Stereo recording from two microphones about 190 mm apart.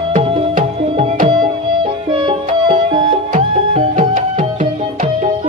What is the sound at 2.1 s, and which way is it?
Music, 25° right (ahead or behind).